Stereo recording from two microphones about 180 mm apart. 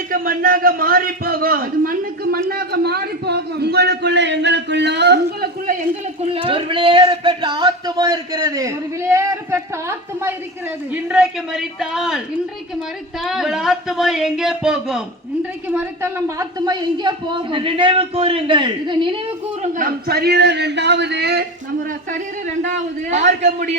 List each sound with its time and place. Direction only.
0.1 s a man's voice: 50° right (ahead or behind)
6.2 s speech: 30° right (ahead or behind); by 10.3 s 15° right (ahead or behind)
10.9 s speech: 5° right (ahead or behind)
13.2 s speech: centre (ahead or behind); by 19.2 s 25° right (ahead or behind)
19.6 s a man's voice: 50° right (ahead or behind); by 21.4 s 65° right (ahead or behind)
22.6 s a man's voice: 45° right (ahead or behind)